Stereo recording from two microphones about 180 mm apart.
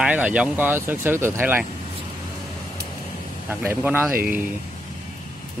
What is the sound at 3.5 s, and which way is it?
Speech, 10° right (ahead or behind).